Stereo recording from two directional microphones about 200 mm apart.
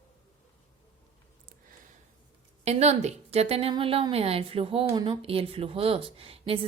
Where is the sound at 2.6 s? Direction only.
35° right (ahead or behind).